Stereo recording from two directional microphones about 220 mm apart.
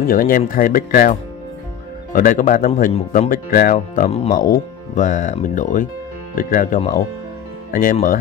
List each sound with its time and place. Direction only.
0.0 s speech: 40° left (ahead or behind)
2.1 s speech: 35° left (ahead or behind)